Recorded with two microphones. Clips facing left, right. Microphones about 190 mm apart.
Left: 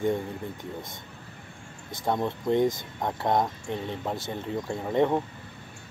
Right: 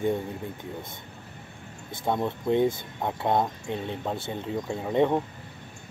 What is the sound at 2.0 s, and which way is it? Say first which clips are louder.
Speech: even; 10° right (ahead or behind).